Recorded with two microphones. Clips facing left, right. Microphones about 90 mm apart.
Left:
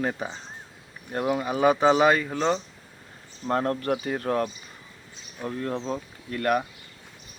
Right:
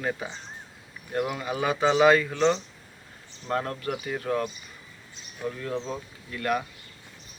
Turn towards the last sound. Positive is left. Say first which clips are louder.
# left 3 dB
turn(degrees=45)  # may be behind; listen again after turning